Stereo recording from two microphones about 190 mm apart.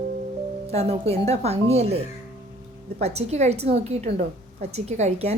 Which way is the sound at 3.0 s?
35° right (ahead or behind).